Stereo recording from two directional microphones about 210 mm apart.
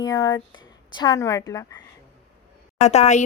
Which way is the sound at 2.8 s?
35° left (ahead or behind).